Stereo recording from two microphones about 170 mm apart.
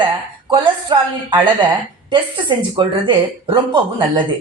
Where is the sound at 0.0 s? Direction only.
30° right (ahead or behind).